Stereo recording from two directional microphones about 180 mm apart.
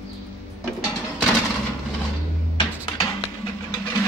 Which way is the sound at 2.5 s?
20° left (ahead or behind).